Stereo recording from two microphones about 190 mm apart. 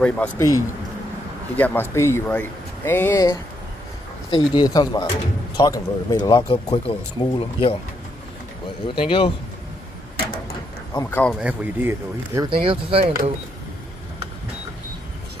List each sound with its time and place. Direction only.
0.0 s speech: 5° left (ahead or behind)
1.6 s speech: 10° left (ahead or behind); by 7.7 s 30° left (ahead or behind)
8.8 s speech: 25° left (ahead or behind)
11.0 s speech: 10° left (ahead or behind)
11.3 s speech: 10° right (ahead or behind)
12.4 s speech: 30° right (ahead or behind)
13.0 s speech: 50° right (ahead or behind)